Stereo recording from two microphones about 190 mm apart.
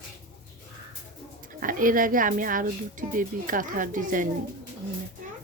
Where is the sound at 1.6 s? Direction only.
45° right (ahead or behind).